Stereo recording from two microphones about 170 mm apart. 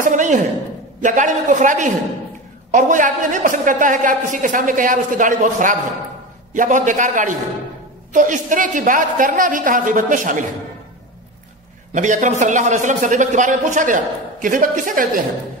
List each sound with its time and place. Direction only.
0.0 s a sound: 45° right (ahead or behind)
1.0 s a man's voice: 45° right (ahead or behind)
11.9 s a man's voice: 45° right (ahead or behind)